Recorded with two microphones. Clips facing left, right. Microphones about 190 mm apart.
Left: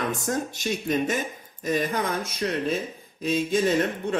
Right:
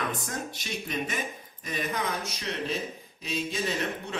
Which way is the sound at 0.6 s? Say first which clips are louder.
Left 9 dB; 45° left (ahead or behind).